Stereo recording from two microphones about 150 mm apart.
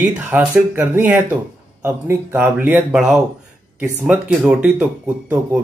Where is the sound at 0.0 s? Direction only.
10° right (ahead or behind).